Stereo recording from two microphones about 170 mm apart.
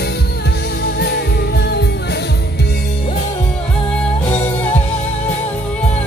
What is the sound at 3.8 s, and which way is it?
Music, 5° left (ahead or behind).